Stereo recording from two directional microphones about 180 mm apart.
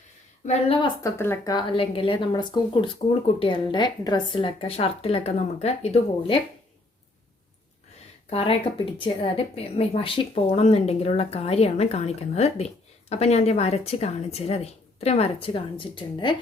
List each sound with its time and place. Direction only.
0.4 s a woman's voice: 30° left (ahead or behind)
1.0 s speech: 15° left (ahead or behind)
1.5 s a woman's voice: 30° left (ahead or behind)
8.3 s a woman's voice: 30° left (ahead or behind)